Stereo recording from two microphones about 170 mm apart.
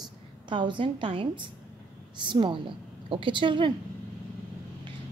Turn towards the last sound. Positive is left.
turn(degrees=-30)  # may be behind; listen again after turning